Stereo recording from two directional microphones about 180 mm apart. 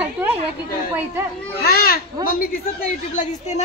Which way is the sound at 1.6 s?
55° left (ahead or behind).